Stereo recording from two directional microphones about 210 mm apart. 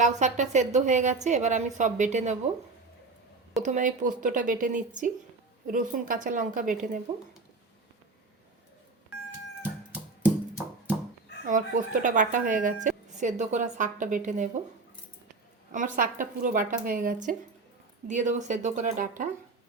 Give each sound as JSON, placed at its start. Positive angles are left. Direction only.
{"t": 0.0, "sound": "a woman's voice", "side_deg": -35}
{"t": 3.6, "sound": "a woman's voice", "side_deg": -35}
{"t": 11.4, "sound": "a woman's voice", "side_deg": -40}
{"t": 15.7, "sound": "a woman's voice", "side_deg": -40}